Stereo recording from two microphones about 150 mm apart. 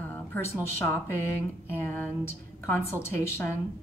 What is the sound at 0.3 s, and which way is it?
Speech, 15° left (ahead or behind).